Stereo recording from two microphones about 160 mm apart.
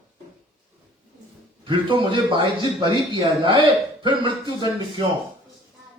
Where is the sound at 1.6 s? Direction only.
30° right (ahead or behind).